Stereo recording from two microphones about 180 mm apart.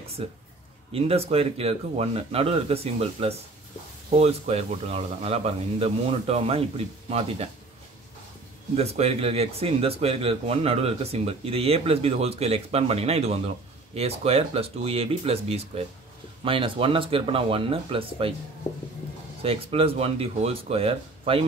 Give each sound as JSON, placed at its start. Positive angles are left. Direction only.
{"t": 0.2, "sound": "speech", "side_deg": -30}
{"t": 8.7, "sound": "speech", "side_deg": -35}
{"t": 19.4, "sound": "speech", "side_deg": -35}